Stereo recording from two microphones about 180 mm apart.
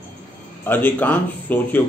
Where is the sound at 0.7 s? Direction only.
10° left (ahead or behind).